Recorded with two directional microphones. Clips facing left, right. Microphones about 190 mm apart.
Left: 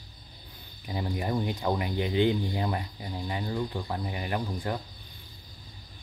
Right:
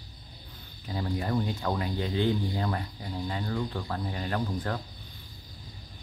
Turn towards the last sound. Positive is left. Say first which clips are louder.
# even
turn(degrees=15)  # may be behind; listen again after turning